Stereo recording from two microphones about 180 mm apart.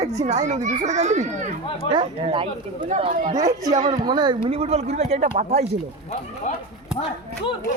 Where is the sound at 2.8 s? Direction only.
40° right (ahead or behind).